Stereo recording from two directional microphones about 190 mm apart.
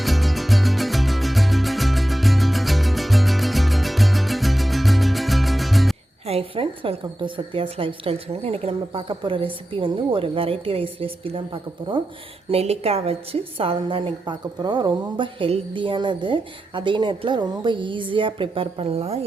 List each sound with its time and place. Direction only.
0.0 s music: centre (ahead or behind)
6.2 s a woman's voice: 30° right (ahead or behind)